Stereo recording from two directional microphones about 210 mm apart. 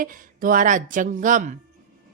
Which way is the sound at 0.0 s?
40° right (ahead or behind).